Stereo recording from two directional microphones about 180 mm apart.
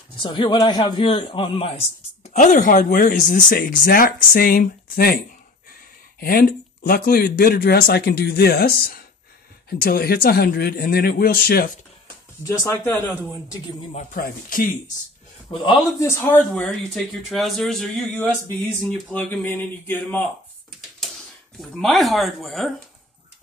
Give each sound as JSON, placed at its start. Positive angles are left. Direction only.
{"t": 0.2, "sound": "a man's voice", "side_deg": 25}
{"t": 12.4, "sound": "speech", "side_deg": 15}
{"t": 13.9, "sound": "a man's voice", "side_deg": 50}
{"t": 15.5, "sound": "a man's voice", "side_deg": 25}
{"t": 16.1, "sound": "speech", "side_deg": 10}
{"t": 21.5, "sound": "speech", "side_deg": 0}